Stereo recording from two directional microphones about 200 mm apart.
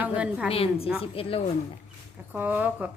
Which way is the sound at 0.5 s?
30° left (ahead or behind).